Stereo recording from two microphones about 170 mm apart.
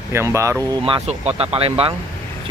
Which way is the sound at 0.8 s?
35° right (ahead or behind).